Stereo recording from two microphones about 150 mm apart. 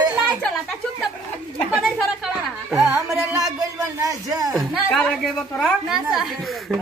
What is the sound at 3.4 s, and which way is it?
Speech, 25° right (ahead or behind).